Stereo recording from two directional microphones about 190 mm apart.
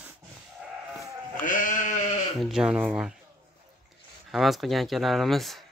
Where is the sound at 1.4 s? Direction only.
45° left (ahead or behind).